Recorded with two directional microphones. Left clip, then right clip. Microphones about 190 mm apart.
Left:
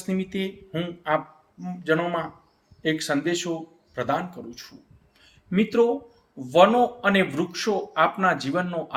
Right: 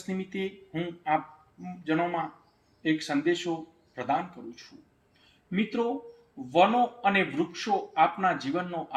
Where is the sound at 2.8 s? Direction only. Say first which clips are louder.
Left 3 dB; 20° left (ahead or behind).